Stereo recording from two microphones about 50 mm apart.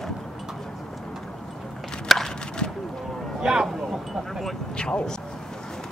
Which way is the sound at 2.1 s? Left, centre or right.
Centre.